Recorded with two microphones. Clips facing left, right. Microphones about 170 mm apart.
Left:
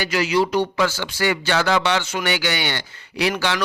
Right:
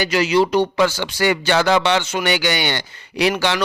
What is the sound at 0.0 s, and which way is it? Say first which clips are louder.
Speech: right 3 dB; 25° right (ahead or behind).